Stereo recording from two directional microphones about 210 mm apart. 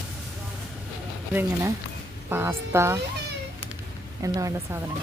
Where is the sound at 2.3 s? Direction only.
10° right (ahead or behind).